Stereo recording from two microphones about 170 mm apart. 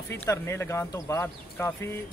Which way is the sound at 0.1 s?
15° left (ahead or behind).